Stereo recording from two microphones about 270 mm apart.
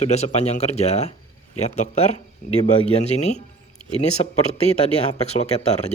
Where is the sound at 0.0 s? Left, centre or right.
Left.